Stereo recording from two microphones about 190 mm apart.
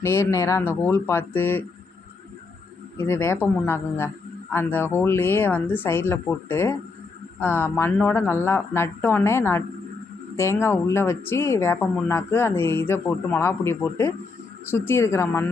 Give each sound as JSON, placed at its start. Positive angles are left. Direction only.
{"t": 0.0, "sound": "speech", "side_deg": 15}
{"t": 3.0, "sound": "speech", "side_deg": 15}